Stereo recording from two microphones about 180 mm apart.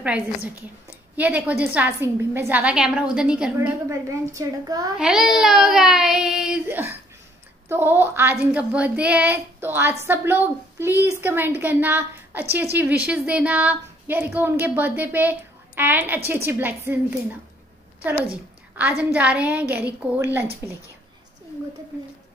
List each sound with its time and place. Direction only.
0.0 s a woman's voice: 5° right (ahead or behind)
3.5 s speech: 15° right (ahead or behind)
4.9 s a woman's voice: 5° right (ahead or behind)
19.0 s speech: 5° right (ahead or behind)